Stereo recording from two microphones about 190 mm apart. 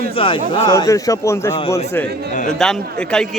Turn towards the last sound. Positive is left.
turn(degrees=5)  # may be behind; listen again after turning